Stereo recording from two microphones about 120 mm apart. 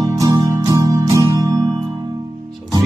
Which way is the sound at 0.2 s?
30° right (ahead or behind).